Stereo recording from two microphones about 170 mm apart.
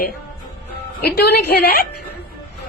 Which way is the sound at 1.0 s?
65° left (ahead or behind).